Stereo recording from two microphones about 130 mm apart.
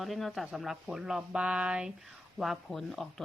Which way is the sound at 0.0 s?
Centre (ahead or behind).